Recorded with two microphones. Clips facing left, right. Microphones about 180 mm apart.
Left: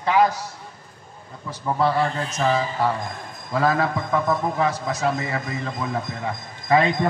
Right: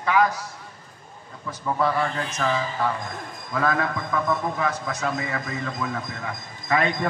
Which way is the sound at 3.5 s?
30° left (ahead or behind).